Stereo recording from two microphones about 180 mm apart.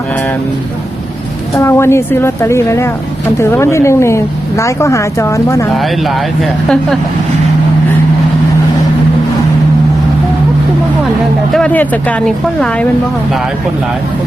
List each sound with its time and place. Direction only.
1.5 s a woman's voice: 15° left (ahead or behind)
11.5 s a woman's voice: 5° left (ahead or behind)